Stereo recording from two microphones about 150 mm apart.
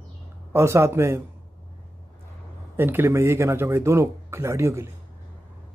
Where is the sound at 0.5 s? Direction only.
15° right (ahead or behind).